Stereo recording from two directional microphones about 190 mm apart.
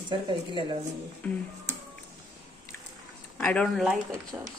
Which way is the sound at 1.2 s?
10° left (ahead or behind).